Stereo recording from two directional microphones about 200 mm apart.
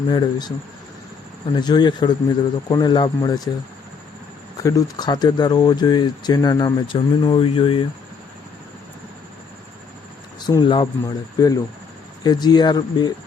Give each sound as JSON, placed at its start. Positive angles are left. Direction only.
{"t": 0.1, "sound": "speech", "side_deg": 20}
{"t": 1.5, "sound": "speech", "side_deg": 20}
{"t": 4.5, "sound": "speech", "side_deg": 15}
{"t": 10.4, "sound": "speech", "side_deg": 20}